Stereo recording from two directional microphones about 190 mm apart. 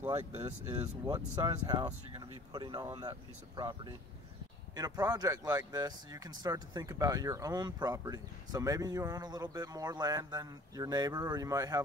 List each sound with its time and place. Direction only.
1.0 s speech: 20° right (ahead or behind)